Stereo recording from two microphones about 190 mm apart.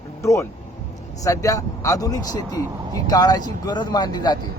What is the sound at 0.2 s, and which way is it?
A man's voice, 15° left (ahead or behind).